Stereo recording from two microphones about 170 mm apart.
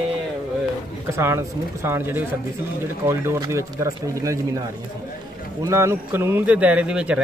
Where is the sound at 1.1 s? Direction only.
15° right (ahead or behind).